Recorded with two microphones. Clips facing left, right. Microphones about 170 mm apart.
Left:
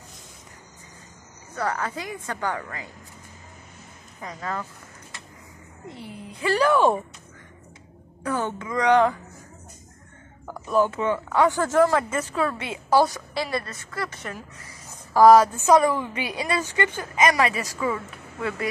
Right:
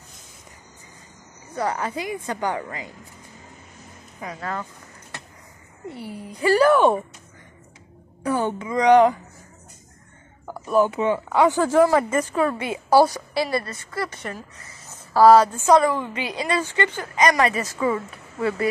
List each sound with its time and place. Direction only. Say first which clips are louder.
1.5 s speech: right 2 dB; 15° right (ahead or behind)
5.9 s speech: right 5 dB; 10° right (ahead or behind)
8.2 s speech: right 4 dB; 10° right (ahead or behind)
10.4 s speech: right 2 dB; 5° right (ahead or behind)
14.9 s a sound: even; 15° left (ahead or behind)
15.6 s speech: right 1 dB; 10° left (ahead or behind)
17.7 s a woman's voice: right 4 dB; 25° right (ahead or behind)